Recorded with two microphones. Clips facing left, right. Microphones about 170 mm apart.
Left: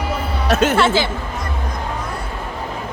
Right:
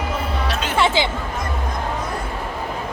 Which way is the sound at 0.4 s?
45° left (ahead or behind).